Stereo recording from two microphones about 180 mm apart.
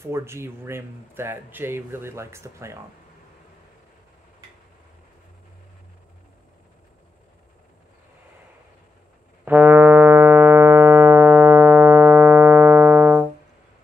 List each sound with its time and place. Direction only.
0.0 s speech: 15° right (ahead or behind)
9.4 s music: 10° right (ahead or behind)